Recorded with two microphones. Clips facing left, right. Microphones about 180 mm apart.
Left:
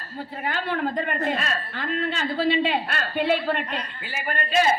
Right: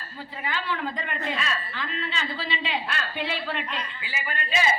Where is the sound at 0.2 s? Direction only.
50° left (ahead or behind).